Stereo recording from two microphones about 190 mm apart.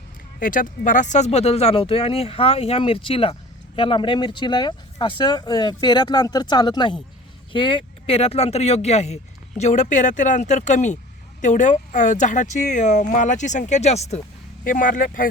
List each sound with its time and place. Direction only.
0.3 s speech: 45° left (ahead or behind)